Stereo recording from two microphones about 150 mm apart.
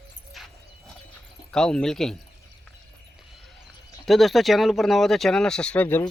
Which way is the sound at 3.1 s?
Centre (ahead or behind).